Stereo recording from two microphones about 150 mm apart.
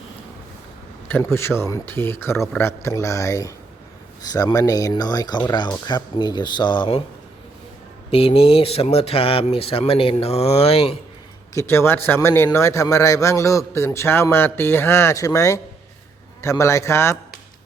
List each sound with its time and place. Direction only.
1.0 s a man's voice: 15° left (ahead or behind); by 7.0 s 35° left (ahead or behind)
8.1 s speech: 40° left (ahead or behind)
11.5 s a man's voice: 15° left (ahead or behind)